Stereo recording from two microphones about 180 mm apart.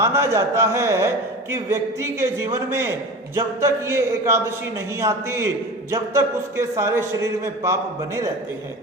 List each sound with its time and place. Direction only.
0.0 s a man's voice: 15° right (ahead or behind)